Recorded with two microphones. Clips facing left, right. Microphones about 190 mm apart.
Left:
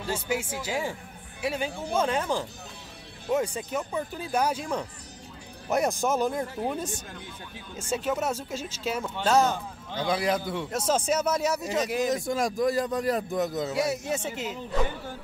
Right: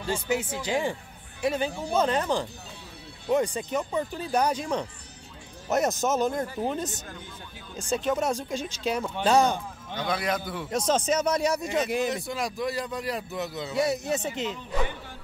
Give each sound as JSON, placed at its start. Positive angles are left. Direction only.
{"t": 0.0, "sound": "speech", "side_deg": 5}
{"t": 6.4, "sound": "speech", "side_deg": 0}
{"t": 6.7, "sound": "speech", "side_deg": 10}
{"t": 10.1, "sound": "a man's voice", "side_deg": 25}
{"t": 10.4, "sound": "speech", "side_deg": 0}
{"t": 12.1, "sound": "a man's voice", "side_deg": 45}
{"t": 13.7, "sound": "speech", "side_deg": 5}